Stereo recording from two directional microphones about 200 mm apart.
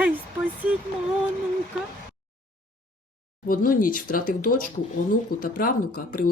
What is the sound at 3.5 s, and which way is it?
Speech, 45° left (ahead or behind).